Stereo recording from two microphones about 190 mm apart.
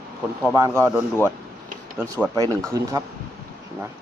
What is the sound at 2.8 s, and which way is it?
Speech, 20° right (ahead or behind).